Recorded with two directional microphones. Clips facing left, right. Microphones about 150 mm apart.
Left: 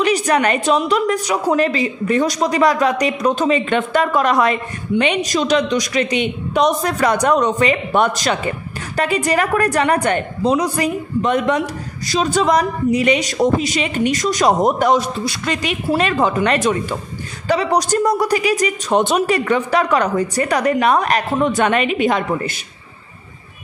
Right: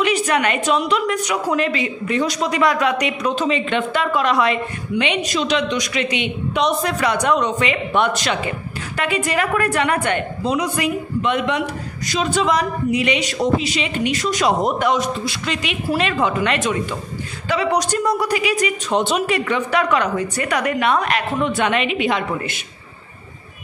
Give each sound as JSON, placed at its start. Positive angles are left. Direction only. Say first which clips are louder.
{"t": 0.0, "sound": "a woman's voice", "louder": "left 2 dB", "side_deg": 40}